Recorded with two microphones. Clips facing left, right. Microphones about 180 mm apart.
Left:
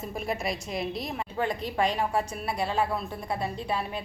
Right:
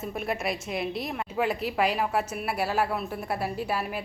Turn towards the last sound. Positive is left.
turn(degrees=-5)  # may be behind; listen again after turning